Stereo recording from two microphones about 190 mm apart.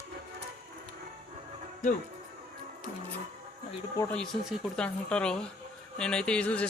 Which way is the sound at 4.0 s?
5° left (ahead or behind).